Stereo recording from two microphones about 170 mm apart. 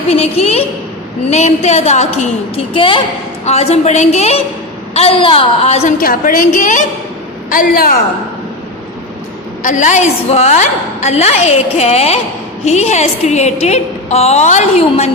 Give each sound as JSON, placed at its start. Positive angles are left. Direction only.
{"t": 0.2, "sound": "a woman's voice", "side_deg": 35}
{"t": 6.0, "sound": "a woman's voice", "side_deg": 55}
{"t": 9.6, "sound": "a woman's voice", "side_deg": 45}